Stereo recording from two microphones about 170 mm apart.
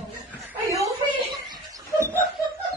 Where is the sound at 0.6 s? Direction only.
15° right (ahead or behind).